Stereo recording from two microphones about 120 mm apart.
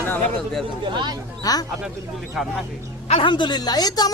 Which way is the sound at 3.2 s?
40° left (ahead or behind).